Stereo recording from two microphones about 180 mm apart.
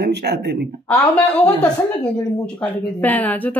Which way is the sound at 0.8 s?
10° left (ahead or behind).